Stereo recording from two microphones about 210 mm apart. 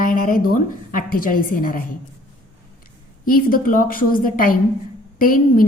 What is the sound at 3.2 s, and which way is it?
A woman's voice, 45° left (ahead or behind).